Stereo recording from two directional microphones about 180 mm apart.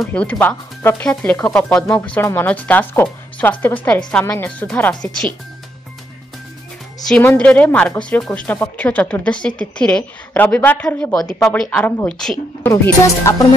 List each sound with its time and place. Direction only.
0.0 s a woman's voice: 5° left (ahead or behind)
7.1 s a woman's voice: 5° left (ahead or behind)
12.6 s a woman's voice: 15° left (ahead or behind)